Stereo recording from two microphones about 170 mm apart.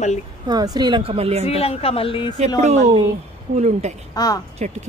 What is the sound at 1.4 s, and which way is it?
Speech, 35° left (ahead or behind).